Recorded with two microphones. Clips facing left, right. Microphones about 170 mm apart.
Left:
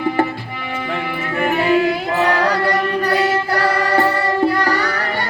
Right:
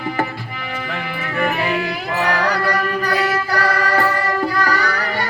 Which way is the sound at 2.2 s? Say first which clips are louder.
Left 2 dB; 25° left (ahead or behind).